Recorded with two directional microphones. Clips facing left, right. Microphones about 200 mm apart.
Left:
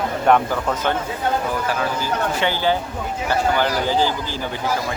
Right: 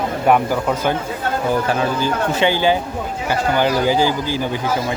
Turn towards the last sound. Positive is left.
turn(degrees=-10)  # may be behind; listen again after turning